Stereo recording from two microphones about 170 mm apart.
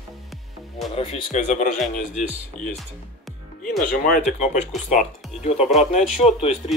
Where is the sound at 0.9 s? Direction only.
40° left (ahead or behind).